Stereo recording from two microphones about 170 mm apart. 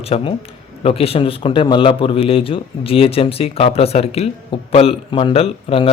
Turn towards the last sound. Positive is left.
turn(degrees=35)  # may be behind; listen again after turning